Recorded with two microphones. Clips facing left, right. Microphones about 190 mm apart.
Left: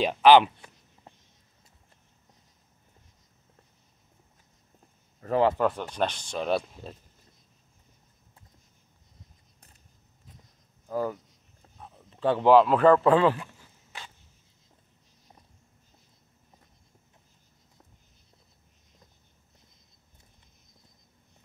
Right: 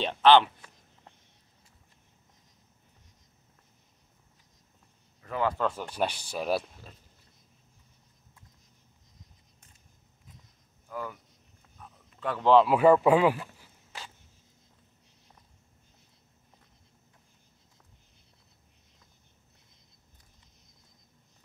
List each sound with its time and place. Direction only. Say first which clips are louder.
0.0 s a sound: left 3 dB; 10° left (ahead or behind)
5.2 s speech: left 6 dB; 35° left (ahead or behind)
5.7 s a man's voice: left 2 dB; 5° right (ahead or behind)
10.9 s speech: left 8 dB; 40° left (ahead or behind)
11.6 s a sound: left 3 dB; 30° left (ahead or behind)
12.6 s a man's voice: left 1 dB; 10° right (ahead or behind)